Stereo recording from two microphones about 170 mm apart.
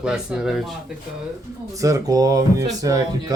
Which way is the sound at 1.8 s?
20° right (ahead or behind).